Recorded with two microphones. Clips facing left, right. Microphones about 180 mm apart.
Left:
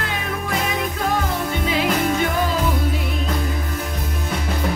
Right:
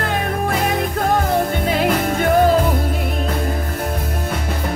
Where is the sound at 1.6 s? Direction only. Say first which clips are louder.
Right 2 dB; 50° right (ahead or behind).